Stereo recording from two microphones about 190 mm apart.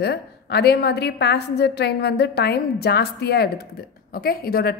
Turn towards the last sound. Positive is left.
turn(degrees=55)  # may be behind; listen again after turning